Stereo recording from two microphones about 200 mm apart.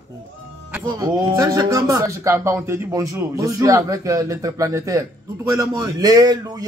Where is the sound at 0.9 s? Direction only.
15° right (ahead or behind).